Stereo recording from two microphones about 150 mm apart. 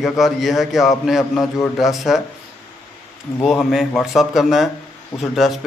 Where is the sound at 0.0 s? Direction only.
Centre (ahead or behind).